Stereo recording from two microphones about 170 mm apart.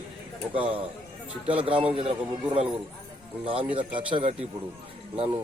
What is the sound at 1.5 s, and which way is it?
Speech, 30° right (ahead or behind).